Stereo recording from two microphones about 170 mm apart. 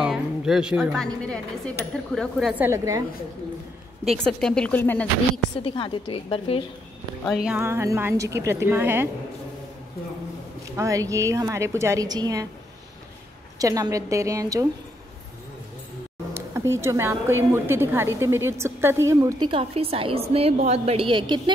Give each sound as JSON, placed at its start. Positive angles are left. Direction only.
{"t": 0.0, "sound": "music", "side_deg": -5}
{"t": 1.0, "sound": "speech", "side_deg": 5}
{"t": 4.2, "sound": "speech", "side_deg": 5}
{"t": 5.6, "sound": "a woman's voice", "side_deg": 30}
{"t": 7.2, "sound": "speech", "side_deg": -5}
{"t": 7.6, "sound": "a woman's voice", "side_deg": -15}
{"t": 10.8, "sound": "a woman's voice", "side_deg": -20}
{"t": 13.6, "sound": "a woman's voice", "side_deg": -20}
{"t": 16.7, "sound": "a woman's voice", "side_deg": -15}
{"t": 19.5, "sound": "a woman's voice", "side_deg": -35}